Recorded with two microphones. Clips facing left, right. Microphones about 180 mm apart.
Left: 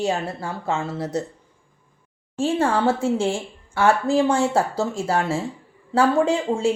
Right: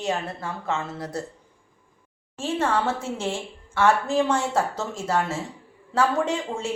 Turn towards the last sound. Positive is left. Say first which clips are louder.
# left 6 dB
turn(degrees=30)  # may be behind; listen again after turning